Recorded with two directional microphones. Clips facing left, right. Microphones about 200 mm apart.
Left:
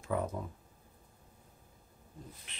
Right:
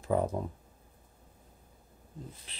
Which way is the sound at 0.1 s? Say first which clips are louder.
Right 5 dB; 35° right (ahead or behind).